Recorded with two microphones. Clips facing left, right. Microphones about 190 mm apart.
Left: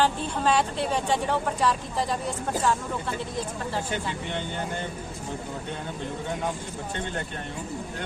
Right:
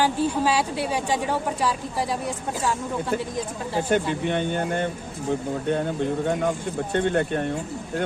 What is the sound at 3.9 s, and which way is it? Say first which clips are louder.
Speech: right 8 dB; 55° right (ahead or behind).